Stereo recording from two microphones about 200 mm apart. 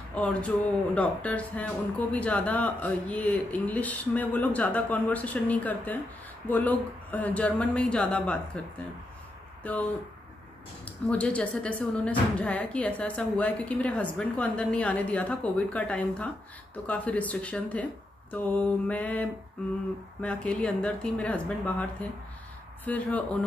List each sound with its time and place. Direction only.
0.1 s speech: 5° left (ahead or behind)
9.6 s speech: 5° left (ahead or behind)
10.9 s speech: 5° left (ahead or behind)
22.8 s speech: 5° left (ahead or behind)